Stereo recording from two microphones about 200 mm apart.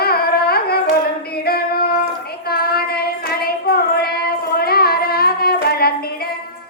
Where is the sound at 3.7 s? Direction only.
50° left (ahead or behind).